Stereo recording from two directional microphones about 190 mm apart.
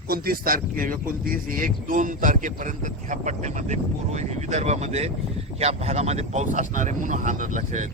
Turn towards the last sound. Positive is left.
turn(degrees=-40)  # may be behind; listen again after turning